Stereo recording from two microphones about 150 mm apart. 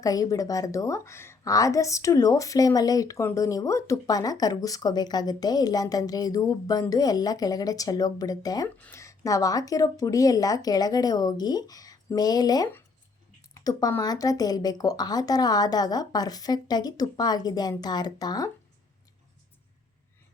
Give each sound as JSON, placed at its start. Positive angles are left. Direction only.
{"t": 0.0, "sound": "a woman's voice", "side_deg": 25}